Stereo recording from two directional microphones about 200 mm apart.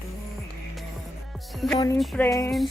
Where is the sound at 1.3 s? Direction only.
Centre (ahead or behind).